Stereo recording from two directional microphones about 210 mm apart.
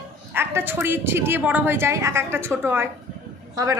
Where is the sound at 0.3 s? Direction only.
10° right (ahead or behind).